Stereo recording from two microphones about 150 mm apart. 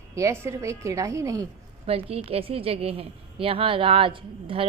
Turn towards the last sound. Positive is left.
turn(degrees=-35)  # may be behind; listen again after turning